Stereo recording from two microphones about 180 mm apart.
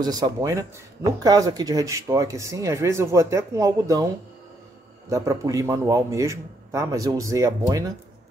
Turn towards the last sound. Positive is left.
turn(degrees=-20)  # may be behind; listen again after turning